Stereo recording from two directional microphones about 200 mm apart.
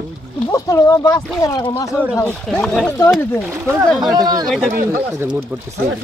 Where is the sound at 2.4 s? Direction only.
5° left (ahead or behind).